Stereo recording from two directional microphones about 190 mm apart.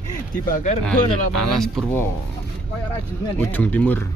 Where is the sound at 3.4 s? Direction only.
10° left (ahead or behind).